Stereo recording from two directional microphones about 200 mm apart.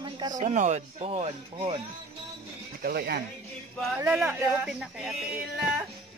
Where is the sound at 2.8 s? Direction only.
55° right (ahead or behind).